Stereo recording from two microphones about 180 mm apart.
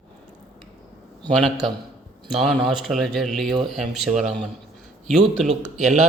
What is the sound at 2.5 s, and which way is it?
Speech, centre (ahead or behind).